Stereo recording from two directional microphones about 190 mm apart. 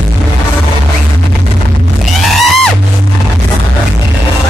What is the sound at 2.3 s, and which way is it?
Music, centre (ahead or behind).